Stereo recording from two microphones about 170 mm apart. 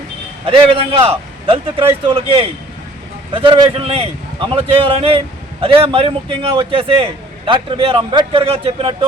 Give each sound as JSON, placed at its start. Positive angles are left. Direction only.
{"t": 0.4, "sound": "a man's voice", "side_deg": -30}